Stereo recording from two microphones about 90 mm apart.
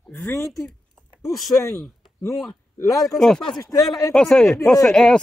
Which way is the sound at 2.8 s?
40° left (ahead or behind).